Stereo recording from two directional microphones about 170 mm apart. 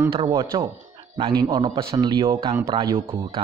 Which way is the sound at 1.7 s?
35° right (ahead or behind).